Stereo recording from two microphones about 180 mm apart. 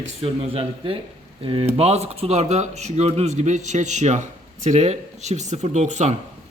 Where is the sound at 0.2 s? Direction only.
30° right (ahead or behind).